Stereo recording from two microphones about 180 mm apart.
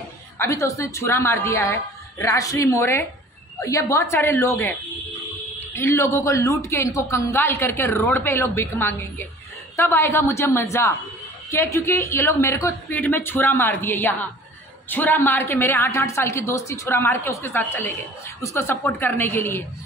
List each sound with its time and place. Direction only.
0.4 s a man's voice: 20° left (ahead or behind)